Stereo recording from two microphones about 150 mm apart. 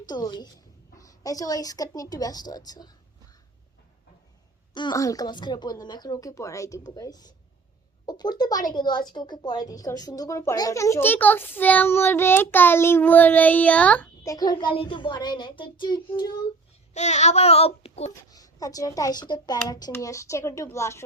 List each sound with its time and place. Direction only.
0.1 s a child's voice: 30° left (ahead or behind)
4.7 s a child's voice: 30° left (ahead or behind); by 14.1 s 10° left (ahead or behind)
14.3 s a child's voice: 25° left (ahead or behind)
16.9 s child singing: 50° left (ahead or behind)
18.1 s a child's voice: 25° left (ahead or behind)